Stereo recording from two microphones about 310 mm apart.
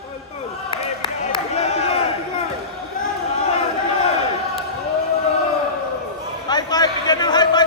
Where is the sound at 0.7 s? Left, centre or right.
Centre.